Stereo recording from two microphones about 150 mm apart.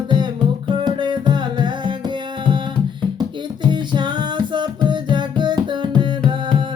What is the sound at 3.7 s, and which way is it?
Music, 30° right (ahead or behind).